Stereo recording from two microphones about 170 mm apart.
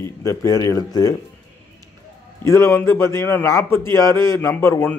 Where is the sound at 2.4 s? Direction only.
15° left (ahead or behind).